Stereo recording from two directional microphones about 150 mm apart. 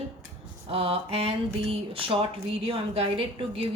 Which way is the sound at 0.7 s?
40° right (ahead or behind).